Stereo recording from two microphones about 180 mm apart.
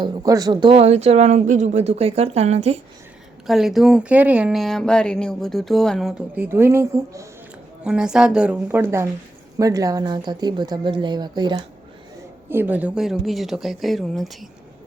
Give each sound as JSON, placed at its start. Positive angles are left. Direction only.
{"t": 0.0, "sound": "speech", "side_deg": -20}
{"t": 3.4, "sound": "a woman's voice", "side_deg": 0}
{"t": 7.9, "sound": "a woman's voice", "side_deg": -5}
{"t": 12.5, "sound": "a woman's voice", "side_deg": -10}